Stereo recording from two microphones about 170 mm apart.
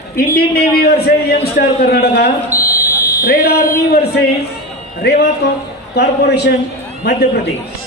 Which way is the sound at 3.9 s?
70° left (ahead or behind).